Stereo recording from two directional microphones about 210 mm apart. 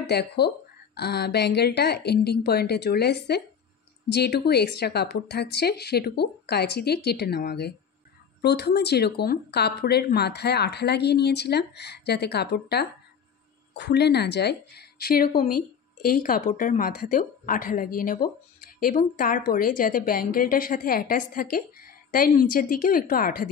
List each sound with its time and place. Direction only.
0.1 s a woman's voice: 50° left (ahead or behind)